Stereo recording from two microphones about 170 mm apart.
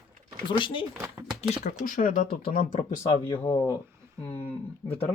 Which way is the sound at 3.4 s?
25° left (ahead or behind).